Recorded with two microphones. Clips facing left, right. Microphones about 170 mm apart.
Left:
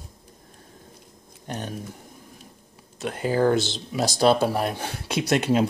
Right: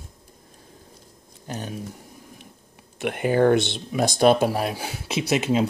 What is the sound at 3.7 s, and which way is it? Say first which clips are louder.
Speech: right 2 dB; 55° right (ahead or behind).